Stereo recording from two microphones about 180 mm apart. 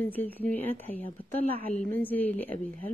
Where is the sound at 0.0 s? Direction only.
10° left (ahead or behind).